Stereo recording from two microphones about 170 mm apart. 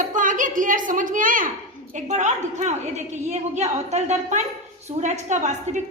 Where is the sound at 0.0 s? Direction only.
50° right (ahead or behind).